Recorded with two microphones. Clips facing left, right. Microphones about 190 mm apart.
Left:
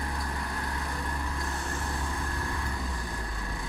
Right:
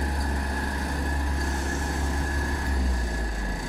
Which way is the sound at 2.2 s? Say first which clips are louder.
Right 4 dB; 40° right (ahead or behind).